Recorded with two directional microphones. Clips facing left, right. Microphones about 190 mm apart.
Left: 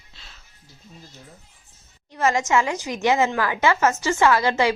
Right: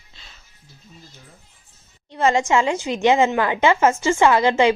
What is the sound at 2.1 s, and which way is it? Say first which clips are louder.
A woman's voice: right 3 dB; 30° right (ahead or behind).